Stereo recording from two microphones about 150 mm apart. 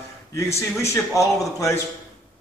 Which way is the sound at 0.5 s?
20° left (ahead or behind).